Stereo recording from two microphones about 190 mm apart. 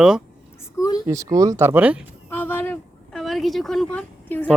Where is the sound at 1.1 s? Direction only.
15° right (ahead or behind).